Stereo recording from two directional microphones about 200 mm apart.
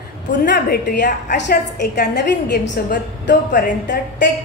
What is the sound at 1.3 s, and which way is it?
A woman's voice, 60° left (ahead or behind).